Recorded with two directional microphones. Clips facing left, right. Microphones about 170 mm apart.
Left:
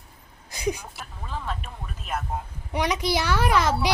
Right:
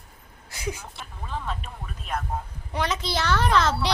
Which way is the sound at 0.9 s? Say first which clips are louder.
Right 1 dB; 5° left (ahead or behind).